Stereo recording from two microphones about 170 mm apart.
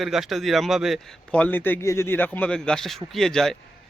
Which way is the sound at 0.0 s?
Centre (ahead or behind).